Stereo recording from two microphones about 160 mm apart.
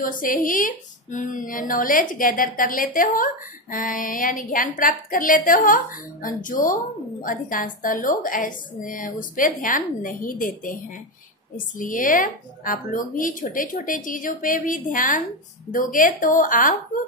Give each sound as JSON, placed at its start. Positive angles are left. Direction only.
{"t": 0.0, "sound": "a woman's voice", "side_deg": 60}